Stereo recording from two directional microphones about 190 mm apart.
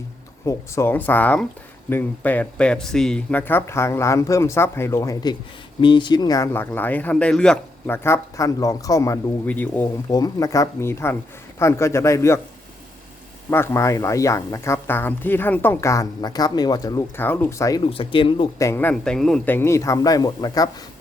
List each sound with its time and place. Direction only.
0.4 s speech: 15° left (ahead or behind)
13.5 s speech: 15° left (ahead or behind)
17.8 s speech: 30° left (ahead or behind)
18.7 s speech: 10° left (ahead or behind)